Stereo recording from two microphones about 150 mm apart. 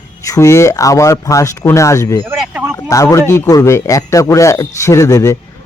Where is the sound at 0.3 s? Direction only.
20° left (ahead or behind).